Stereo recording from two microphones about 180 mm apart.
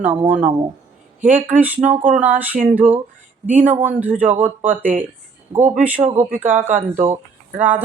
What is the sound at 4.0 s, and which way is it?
Speech, 10° right (ahead or behind).